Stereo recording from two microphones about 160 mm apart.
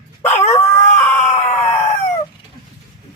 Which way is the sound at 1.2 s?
45° left (ahead or behind).